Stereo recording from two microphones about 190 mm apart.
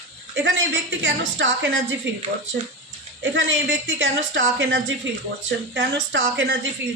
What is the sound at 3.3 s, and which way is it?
A woman's voice, 75° right (ahead or behind).